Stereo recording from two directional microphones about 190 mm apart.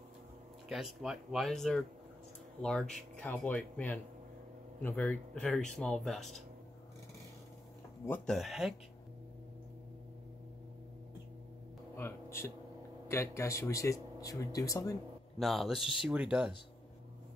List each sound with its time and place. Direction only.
0.7 s speech: centre (ahead or behind)
8.1 s speech: centre (ahead or behind)
12.0 s a sound: 15° left (ahead or behind)
13.1 s speech: 15° left (ahead or behind)
15.3 s speech: centre (ahead or behind)